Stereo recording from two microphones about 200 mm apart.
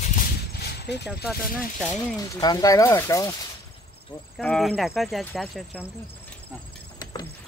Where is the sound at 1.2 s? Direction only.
Centre (ahead or behind).